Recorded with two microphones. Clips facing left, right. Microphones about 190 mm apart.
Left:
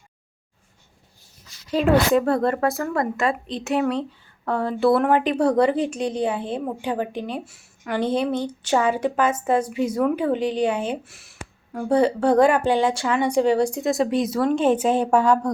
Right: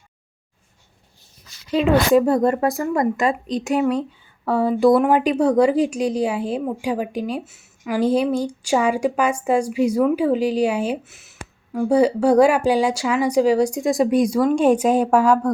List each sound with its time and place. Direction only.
1.7 s speech: centre (ahead or behind)
2.3 s speech: 15° right (ahead or behind)